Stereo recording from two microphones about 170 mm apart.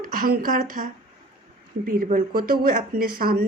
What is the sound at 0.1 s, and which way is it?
Speech, 55° right (ahead or behind).